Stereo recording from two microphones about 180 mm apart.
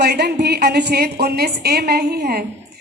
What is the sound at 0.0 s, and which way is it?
Speech, 65° right (ahead or behind).